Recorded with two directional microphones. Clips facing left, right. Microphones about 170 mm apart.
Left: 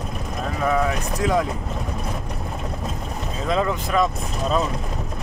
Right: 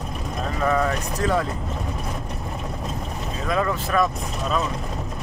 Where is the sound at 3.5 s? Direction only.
20° left (ahead or behind).